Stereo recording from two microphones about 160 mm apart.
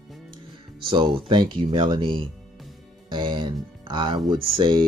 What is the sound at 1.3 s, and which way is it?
Speech, 30° right (ahead or behind).